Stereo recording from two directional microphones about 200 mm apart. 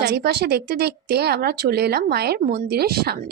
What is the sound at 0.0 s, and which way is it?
Speech, 55° right (ahead or behind).